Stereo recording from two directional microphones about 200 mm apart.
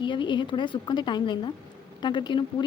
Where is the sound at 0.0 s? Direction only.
25° left (ahead or behind).